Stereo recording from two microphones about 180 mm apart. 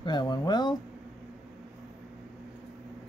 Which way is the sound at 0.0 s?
25° left (ahead or behind).